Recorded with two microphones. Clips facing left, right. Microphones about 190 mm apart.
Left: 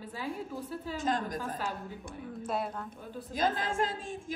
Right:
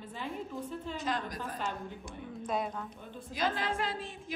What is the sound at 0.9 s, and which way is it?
Speech, 45° left (ahead or behind).